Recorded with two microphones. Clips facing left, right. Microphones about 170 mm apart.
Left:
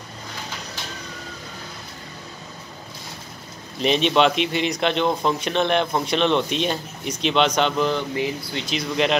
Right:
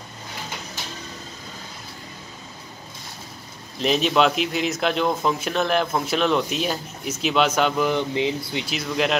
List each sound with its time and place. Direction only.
3.8 s a man's voice: centre (ahead or behind)
7.9 s speech: 20° right (ahead or behind)
8.5 s a man's voice: 5° right (ahead or behind)